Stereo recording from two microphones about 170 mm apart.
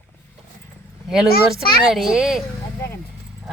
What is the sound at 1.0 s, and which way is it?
Speech, centre (ahead or behind).